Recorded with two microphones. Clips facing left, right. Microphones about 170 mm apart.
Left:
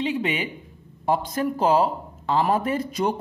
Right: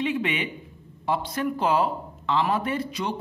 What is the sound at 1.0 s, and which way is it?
Speech, 40° left (ahead or behind).